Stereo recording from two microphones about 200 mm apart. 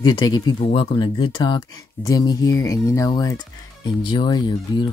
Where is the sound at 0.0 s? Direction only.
20° left (ahead or behind).